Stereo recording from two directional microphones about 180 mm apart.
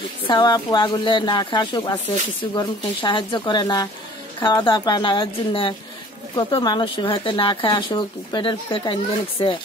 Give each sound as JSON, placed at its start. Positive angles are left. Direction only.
{"t": 0.3, "sound": "speech", "side_deg": 25}